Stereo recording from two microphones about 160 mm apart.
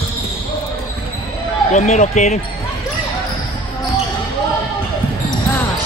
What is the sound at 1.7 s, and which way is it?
Speech, 50° left (ahead or behind).